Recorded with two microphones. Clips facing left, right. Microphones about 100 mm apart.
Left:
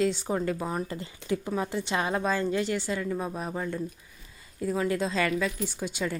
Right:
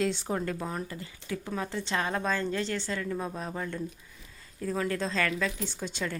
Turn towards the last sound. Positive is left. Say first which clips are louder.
# left 3 dB
turn(degrees=10)  # may be behind; listen again after turning